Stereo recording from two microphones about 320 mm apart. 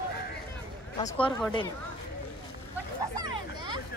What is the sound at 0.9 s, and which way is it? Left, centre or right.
Speech, centre.